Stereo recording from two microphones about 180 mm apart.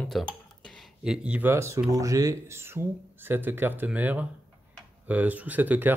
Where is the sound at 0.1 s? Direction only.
Centre (ahead or behind).